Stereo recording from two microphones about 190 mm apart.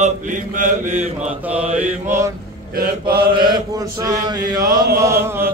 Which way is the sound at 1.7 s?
15° right (ahead or behind).